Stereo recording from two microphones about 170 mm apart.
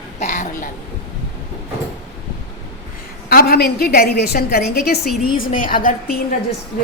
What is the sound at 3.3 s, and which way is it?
A woman's voice, 65° left (ahead or behind).